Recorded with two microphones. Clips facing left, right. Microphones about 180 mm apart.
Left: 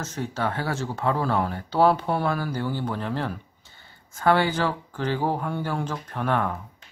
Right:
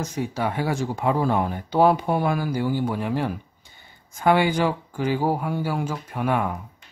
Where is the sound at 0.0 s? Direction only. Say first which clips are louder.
Right 2 dB; 10° right (ahead or behind).